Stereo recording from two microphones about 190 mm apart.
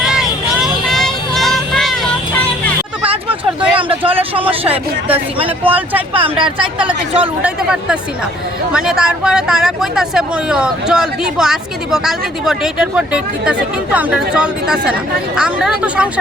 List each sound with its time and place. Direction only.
0.0 s vehicle: centre (ahead or behind)
3.0 s a sound: 30° right (ahead or behind)
5.4 s speech: 30° right (ahead or behind)
7.4 s speech: 5° right (ahead or behind)